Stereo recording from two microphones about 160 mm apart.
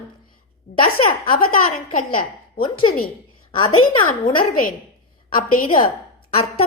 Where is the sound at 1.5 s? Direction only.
60° left (ahead or behind).